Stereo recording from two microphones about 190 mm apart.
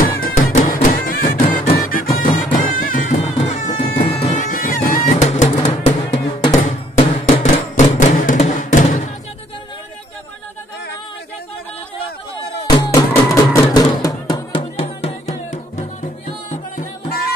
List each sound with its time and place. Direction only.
0.0 s music: 50° left (ahead or behind)
12.6 s music: 20° left (ahead or behind); by 17.3 s 45° left (ahead or behind)